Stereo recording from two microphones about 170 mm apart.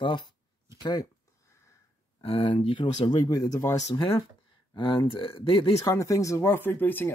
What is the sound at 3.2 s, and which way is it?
Speech, 20° left (ahead or behind).